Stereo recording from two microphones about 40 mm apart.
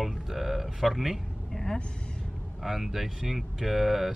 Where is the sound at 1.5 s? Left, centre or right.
Centre.